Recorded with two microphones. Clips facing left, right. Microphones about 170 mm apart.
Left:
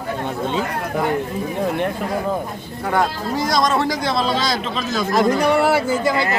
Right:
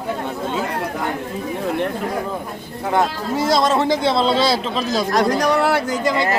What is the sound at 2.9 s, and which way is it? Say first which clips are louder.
Speech: right 1 dB; 25° right (ahead or behind).